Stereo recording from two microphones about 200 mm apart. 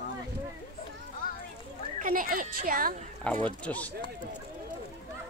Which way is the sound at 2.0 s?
45° right (ahead or behind).